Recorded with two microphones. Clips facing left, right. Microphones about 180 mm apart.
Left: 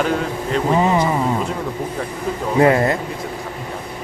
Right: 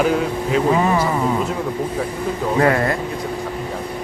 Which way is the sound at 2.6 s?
20° left (ahead or behind).